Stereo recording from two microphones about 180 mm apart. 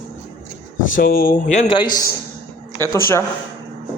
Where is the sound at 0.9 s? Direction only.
50° left (ahead or behind).